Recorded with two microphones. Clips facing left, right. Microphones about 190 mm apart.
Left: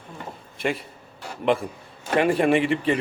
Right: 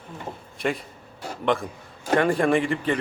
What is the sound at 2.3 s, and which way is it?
Speech, 5° left (ahead or behind).